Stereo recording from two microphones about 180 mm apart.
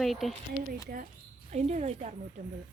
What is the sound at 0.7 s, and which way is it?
Speech, 50° right (ahead or behind).